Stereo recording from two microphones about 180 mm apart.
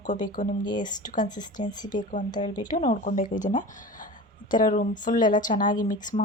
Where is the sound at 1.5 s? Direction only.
45° left (ahead or behind).